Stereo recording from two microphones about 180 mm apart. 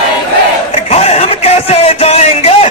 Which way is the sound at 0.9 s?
35° left (ahead or behind).